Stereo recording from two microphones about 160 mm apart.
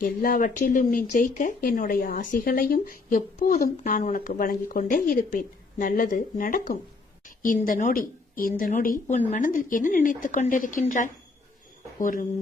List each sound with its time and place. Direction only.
0.0 s speech: 60° left (ahead or behind)